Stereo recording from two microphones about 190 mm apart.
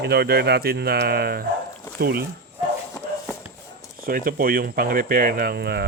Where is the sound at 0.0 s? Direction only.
60° right (ahead or behind).